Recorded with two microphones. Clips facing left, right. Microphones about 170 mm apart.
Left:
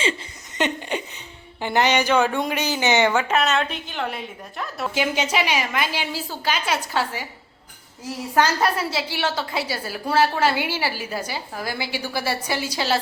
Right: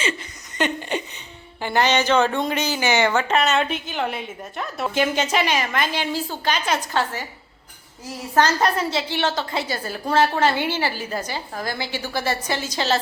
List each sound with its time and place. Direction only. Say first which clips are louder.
0.6 s a sound: right 1 dB; 15° left (ahead or behind)
1.6 s a woman's voice: even; 15° left (ahead or behind)
8.4 s a woman's voice: right 1 dB; 10° left (ahead or behind)